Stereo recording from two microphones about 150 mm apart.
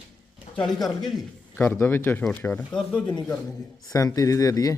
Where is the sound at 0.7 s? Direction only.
Centre (ahead or behind).